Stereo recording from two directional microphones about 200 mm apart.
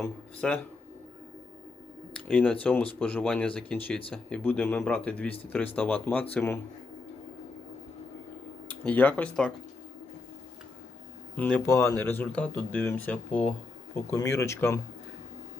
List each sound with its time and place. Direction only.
0.0 s speech: 10° left (ahead or behind)
2.2 s speech: 10° left (ahead or behind)
8.6 s speech: 10° left (ahead or behind)
11.3 s speech: 5° left (ahead or behind)